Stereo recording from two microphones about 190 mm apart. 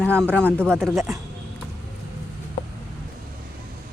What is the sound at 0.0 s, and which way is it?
Speech, 5° left (ahead or behind).